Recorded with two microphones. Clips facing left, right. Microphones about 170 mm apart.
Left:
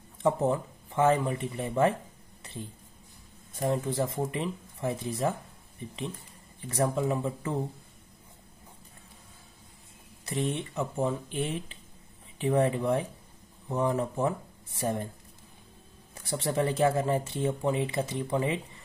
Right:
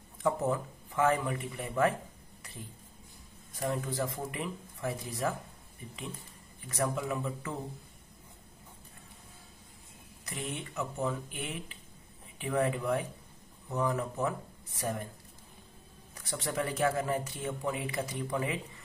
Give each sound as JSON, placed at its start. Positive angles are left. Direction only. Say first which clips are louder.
{"t": 0.2, "sound": "speech", "louder": "left 4 dB", "side_deg": 25}
{"t": 2.4, "sound": "a sound", "louder": "left 7 dB", "side_deg": 25}
{"t": 3.5, "sound": "speech", "louder": "left 5 dB", "side_deg": 25}
{"t": 6.7, "sound": "speech", "louder": "left 5 dB", "side_deg": 30}
{"t": 10.2, "sound": "speech", "louder": "left 8 dB", "side_deg": 30}
{"t": 16.2, "sound": "speech", "louder": "left 6 dB", "side_deg": 30}